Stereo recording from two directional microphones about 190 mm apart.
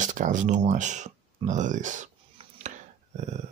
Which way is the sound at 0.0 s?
40° right (ahead or behind).